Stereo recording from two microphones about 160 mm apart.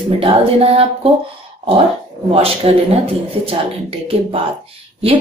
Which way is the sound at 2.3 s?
35° right (ahead or behind).